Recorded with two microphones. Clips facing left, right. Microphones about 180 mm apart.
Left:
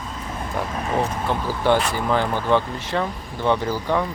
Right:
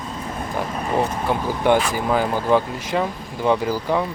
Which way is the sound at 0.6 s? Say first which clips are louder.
Right 1 dB; centre (ahead or behind).